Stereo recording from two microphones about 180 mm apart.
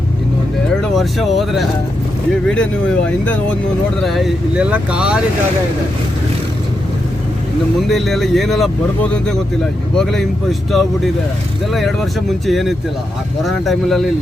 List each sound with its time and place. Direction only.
0.7 s speech: centre (ahead or behind)
7.8 s speech: centre (ahead or behind)
10.0 s speech: centre (ahead or behind)